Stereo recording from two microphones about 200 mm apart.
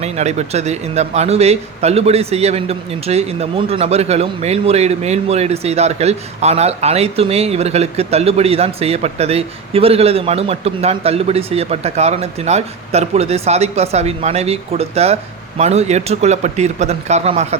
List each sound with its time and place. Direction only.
0.0 s a man's voice: 35° right (ahead or behind)